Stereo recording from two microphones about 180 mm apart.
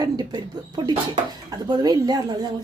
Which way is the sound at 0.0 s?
20° right (ahead or behind).